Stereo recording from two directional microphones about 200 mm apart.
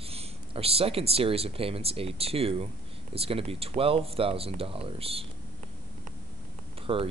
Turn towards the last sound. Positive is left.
turn(degrees=-25)  # may be behind; listen again after turning